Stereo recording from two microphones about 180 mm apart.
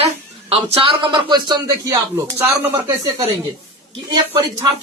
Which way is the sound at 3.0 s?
30° right (ahead or behind).